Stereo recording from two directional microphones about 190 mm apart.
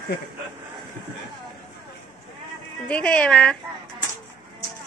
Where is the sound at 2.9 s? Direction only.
5° left (ahead or behind).